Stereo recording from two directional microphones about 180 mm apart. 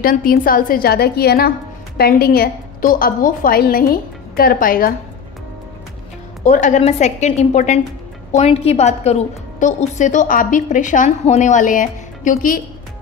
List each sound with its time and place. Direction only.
0.0 s a woman's voice: 50° left (ahead or behind)
6.4 s a woman's voice: 40° left (ahead or behind)